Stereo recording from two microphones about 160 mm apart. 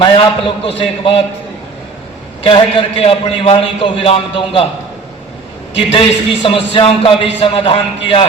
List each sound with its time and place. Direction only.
0.0 s a man's voice: 35° left (ahead or behind)
2.4 s a man's voice: 35° left (ahead or behind)
5.9 s a man's voice: 35° left (ahead or behind)